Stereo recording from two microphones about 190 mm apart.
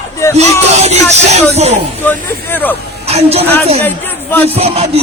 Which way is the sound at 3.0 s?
30° right (ahead or behind).